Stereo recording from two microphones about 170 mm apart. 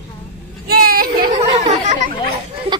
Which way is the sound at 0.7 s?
60° right (ahead or behind).